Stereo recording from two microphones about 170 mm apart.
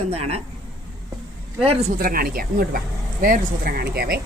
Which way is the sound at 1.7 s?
35° right (ahead or behind).